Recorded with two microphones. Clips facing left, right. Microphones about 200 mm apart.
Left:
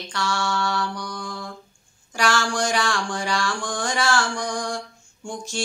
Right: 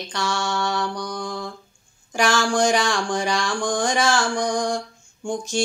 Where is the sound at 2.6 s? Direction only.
20° right (ahead or behind).